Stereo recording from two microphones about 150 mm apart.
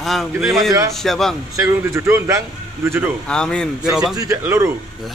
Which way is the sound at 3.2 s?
5° left (ahead or behind).